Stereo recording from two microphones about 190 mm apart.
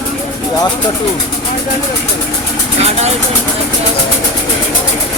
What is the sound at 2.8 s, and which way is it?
Speech, 35° right (ahead or behind).